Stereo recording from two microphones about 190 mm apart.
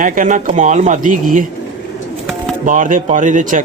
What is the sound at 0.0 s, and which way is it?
Speech, 45° right (ahead or behind).